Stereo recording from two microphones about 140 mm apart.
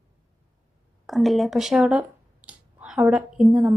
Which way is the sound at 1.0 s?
Centre (ahead or behind).